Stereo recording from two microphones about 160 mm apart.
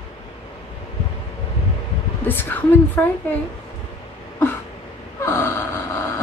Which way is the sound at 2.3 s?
10° left (ahead or behind).